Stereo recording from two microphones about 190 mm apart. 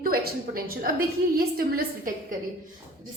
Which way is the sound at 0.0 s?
50° right (ahead or behind).